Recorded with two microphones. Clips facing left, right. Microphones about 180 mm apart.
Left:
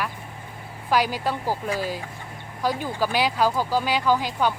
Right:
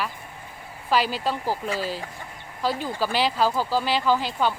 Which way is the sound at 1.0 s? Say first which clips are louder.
Left 1 dB; 15° left (ahead or behind).